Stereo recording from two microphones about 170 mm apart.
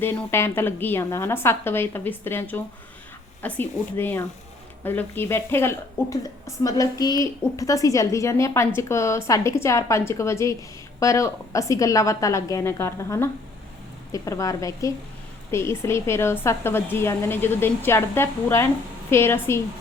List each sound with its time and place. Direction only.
0.0 s a woman's voice: 10° left (ahead or behind)